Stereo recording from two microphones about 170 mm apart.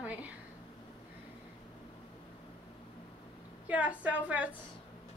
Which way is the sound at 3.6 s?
10° right (ahead or behind).